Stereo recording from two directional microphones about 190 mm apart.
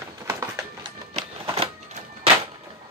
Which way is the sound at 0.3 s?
15° right (ahead or behind).